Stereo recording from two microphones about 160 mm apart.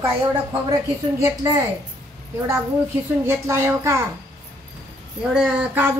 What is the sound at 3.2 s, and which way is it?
Speech, 20° right (ahead or behind).